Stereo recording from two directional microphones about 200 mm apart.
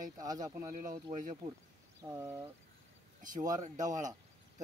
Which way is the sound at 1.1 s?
40° right (ahead or behind).